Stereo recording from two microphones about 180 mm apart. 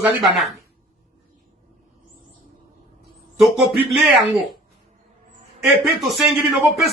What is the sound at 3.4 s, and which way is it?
Speech, centre (ahead or behind).